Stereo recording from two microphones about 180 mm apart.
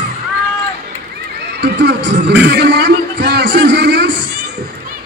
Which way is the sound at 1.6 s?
70° right (ahead or behind).